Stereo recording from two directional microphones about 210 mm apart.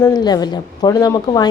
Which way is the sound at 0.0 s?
20° left (ahead or behind).